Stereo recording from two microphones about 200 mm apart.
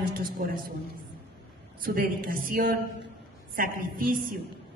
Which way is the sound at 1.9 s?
45° right (ahead or behind).